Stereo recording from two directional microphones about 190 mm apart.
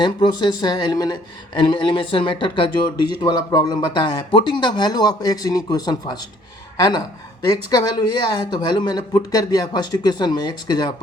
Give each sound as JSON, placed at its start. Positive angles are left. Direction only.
{"t": 0.0, "sound": "speech", "side_deg": 25}
{"t": 7.7, "sound": "speech", "side_deg": 20}